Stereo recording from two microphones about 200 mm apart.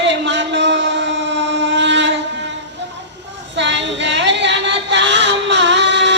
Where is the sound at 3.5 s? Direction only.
65° right (ahead or behind).